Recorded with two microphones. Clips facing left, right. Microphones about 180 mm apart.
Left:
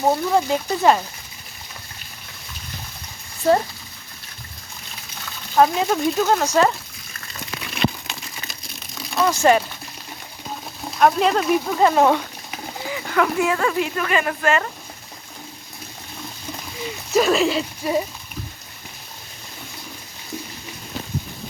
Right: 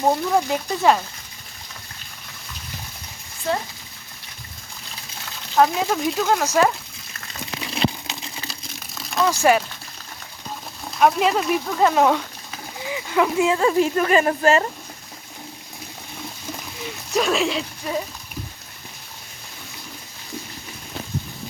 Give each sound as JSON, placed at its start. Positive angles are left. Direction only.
{"t": 0.0, "sound": "speech", "side_deg": 0}
{"t": 3.5, "sound": "speech", "side_deg": 40}
{"t": 5.5, "sound": "speech", "side_deg": 0}
{"t": 7.7, "sound": "a sound", "side_deg": -30}
{"t": 9.0, "sound": "a sound", "side_deg": 5}
{"t": 9.3, "sound": "speech", "side_deg": -10}
{"t": 10.9, "sound": "speech", "side_deg": 0}
{"t": 12.9, "sound": "speech", "side_deg": -20}
{"t": 16.8, "sound": "speech", "side_deg": 0}